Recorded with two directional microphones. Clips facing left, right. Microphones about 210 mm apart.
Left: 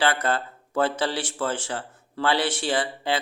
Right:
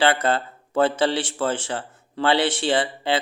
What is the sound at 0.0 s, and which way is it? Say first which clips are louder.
Speech: right 4 dB; 25° right (ahead or behind).